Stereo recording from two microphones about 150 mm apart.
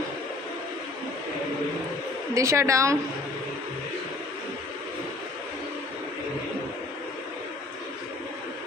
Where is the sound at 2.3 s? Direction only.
20° right (ahead or behind).